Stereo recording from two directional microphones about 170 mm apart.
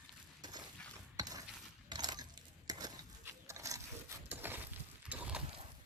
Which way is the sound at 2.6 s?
20° right (ahead or behind).